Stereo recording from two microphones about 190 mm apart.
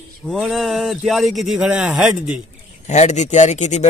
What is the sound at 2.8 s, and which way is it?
Speech, 40° left (ahead or behind).